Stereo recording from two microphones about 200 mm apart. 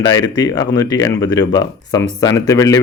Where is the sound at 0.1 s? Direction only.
20° left (ahead or behind).